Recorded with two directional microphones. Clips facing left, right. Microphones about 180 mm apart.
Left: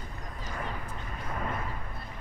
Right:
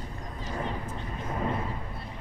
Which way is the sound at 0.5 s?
25° right (ahead or behind).